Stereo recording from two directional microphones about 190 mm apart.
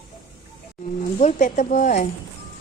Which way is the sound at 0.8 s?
40° left (ahead or behind).